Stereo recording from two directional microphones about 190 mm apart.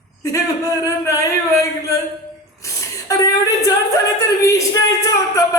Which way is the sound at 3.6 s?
15° left (ahead or behind).